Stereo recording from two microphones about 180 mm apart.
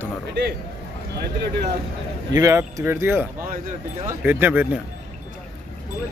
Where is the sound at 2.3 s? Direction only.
20° right (ahead or behind).